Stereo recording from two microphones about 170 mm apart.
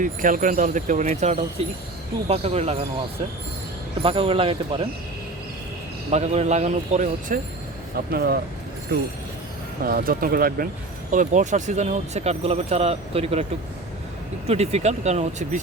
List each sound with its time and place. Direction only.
0.0 s speech: 50° right (ahead or behind)
4.0 s speech: 30° right (ahead or behind)
6.1 s speech: 40° right (ahead or behind)
8.1 s speech: 65° right (ahead or behind)
9.8 s speech: 60° right (ahead or behind)
11.1 s speech: 50° right (ahead or behind)
14.4 s speech: 40° right (ahead or behind)